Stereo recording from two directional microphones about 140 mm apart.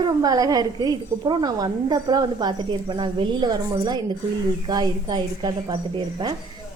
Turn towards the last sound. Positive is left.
turn(degrees=-35)  # may be behind; listen again after turning